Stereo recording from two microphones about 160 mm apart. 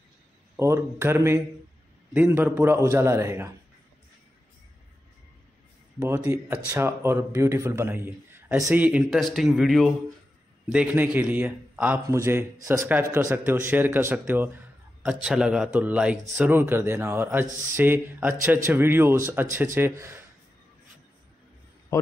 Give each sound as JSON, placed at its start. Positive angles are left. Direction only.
{"t": 0.6, "sound": "speech", "side_deg": -15}
{"t": 5.9, "sound": "speech", "side_deg": -15}